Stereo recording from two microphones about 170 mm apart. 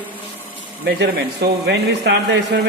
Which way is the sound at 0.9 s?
70° right (ahead or behind).